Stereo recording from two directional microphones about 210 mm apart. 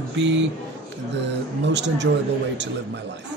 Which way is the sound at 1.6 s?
55° right (ahead or behind).